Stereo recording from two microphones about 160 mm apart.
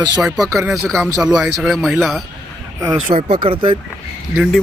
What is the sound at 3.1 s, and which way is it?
Speech, 35° right (ahead or behind).